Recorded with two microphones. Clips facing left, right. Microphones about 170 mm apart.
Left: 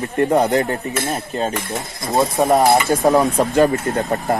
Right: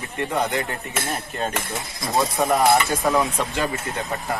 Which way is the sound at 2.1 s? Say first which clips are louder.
Left 5 dB; 25° left (ahead or behind).